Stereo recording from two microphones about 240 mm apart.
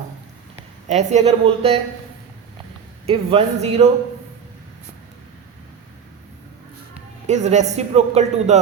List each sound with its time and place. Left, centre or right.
0.9 s a man's voice: right
3.1 s a man's voice: right
7.3 s a man's voice: right